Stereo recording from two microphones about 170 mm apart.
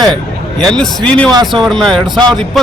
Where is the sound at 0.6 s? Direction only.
5° left (ahead or behind).